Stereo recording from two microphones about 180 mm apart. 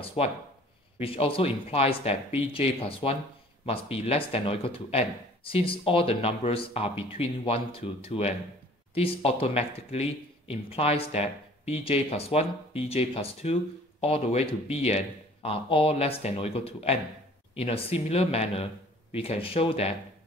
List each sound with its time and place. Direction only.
0.0 s a man's voice: 30° left (ahead or behind)